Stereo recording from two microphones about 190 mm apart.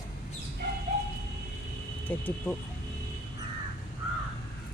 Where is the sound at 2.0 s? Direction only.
10° left (ahead or behind).